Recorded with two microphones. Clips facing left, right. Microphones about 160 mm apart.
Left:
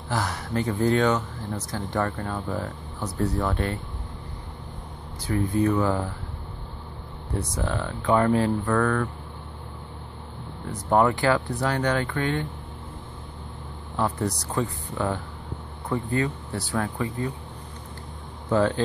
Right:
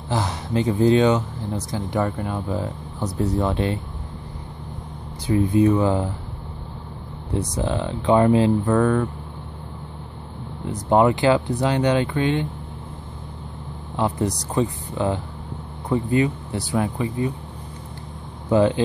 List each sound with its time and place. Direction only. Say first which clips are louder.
0.1 s speech: right 4 dB; 20° right (ahead or behind)
5.2 s speech: right 6 dB; 20° right (ahead or behind)
7.5 s speech: right 4 dB; 20° right (ahead or behind)
10.7 s speech: right 4 dB; 20° right (ahead or behind)
13.9 s speech: right 3 dB; 15° right (ahead or behind)
18.5 s speech: right 4 dB; 15° right (ahead or behind)